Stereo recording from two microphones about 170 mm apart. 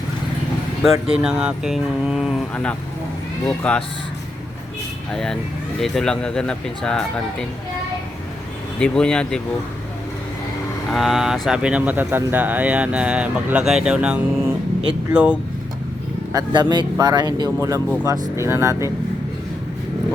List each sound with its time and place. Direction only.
0.8 s speech: 5° right (ahead or behind)
5.1 s speech: 5° left (ahead or behind)
8.8 s speech: 5° left (ahead or behind)
10.9 s speech: centre (ahead or behind)
16.3 s speech: 25° right (ahead or behind)